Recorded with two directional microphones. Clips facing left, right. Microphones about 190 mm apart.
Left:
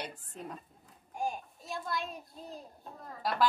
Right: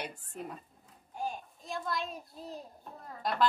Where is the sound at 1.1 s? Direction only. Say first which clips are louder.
Left 2 dB; 10° left (ahead or behind).